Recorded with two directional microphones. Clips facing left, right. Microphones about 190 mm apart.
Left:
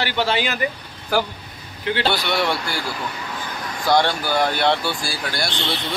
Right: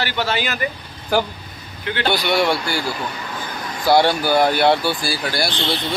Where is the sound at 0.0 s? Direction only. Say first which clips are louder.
Left 1 dB; 25° left (ahead or behind).